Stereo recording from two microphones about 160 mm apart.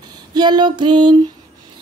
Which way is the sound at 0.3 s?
25° right (ahead or behind).